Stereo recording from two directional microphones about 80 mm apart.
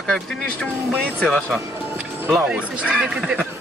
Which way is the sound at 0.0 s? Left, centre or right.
Centre.